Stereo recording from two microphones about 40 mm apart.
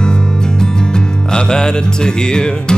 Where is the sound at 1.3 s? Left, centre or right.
Centre.